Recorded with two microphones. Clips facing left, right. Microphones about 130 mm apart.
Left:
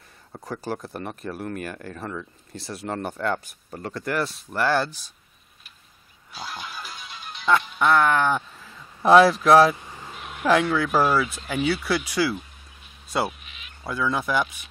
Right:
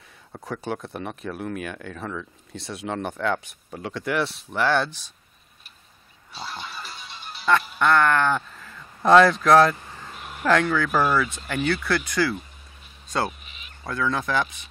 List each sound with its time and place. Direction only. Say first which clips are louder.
0.3 s speech: right 1 dB; centre (ahead or behind)
6.3 s music: even; centre (ahead or behind)
7.8 s speech: even; 5° left (ahead or behind)
10.1 s speech: left 1 dB; centre (ahead or behind)
13.4 s a sound: even; centre (ahead or behind)
13.8 s speech: even; 10° left (ahead or behind)